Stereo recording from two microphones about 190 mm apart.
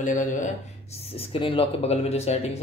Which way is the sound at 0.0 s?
40° left (ahead or behind).